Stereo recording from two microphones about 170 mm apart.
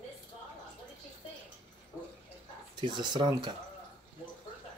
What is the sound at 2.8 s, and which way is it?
Speech, 25° right (ahead or behind).